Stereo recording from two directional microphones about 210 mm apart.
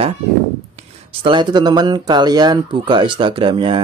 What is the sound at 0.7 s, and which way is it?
Speech, 25° right (ahead or behind).